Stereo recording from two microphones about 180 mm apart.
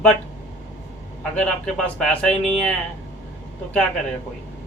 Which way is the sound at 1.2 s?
5° left (ahead or behind).